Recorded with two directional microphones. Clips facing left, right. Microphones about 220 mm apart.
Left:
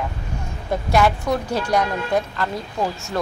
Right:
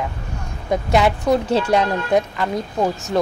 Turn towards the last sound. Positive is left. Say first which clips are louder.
# right 5 dB
turn(degrees=-20)  # may be behind; listen again after turning